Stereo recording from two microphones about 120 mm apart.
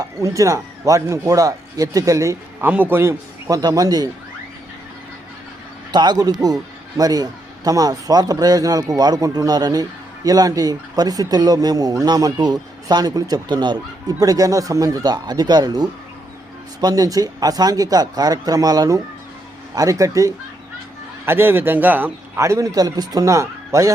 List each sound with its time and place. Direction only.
0.0 s speech: 25° right (ahead or behind)
2.6 s speech: 15° right (ahead or behind); by 4.1 s 30° right (ahead or behind)
5.9 s speech: 35° right (ahead or behind)